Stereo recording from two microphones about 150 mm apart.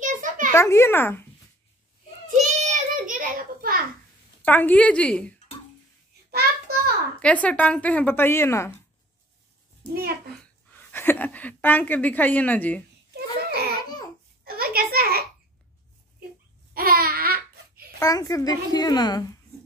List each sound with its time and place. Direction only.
0.0 s a sound: 60° right (ahead or behind)
0.5 s speech: 20° left (ahead or behind)
2.4 s child singing: 50° right (ahead or behind); by 3.8 s 70° right (ahead or behind)
4.5 s speech: 10° left (ahead or behind)
7.2 s speech: 10° left (ahead or behind)
10.7 s a woman's voice: 15° left (ahead or behind)
13.1 s a sound: 90° right
16.7 s babbling: 80° right
17.9 s a child's voice: 25° left (ahead or behind)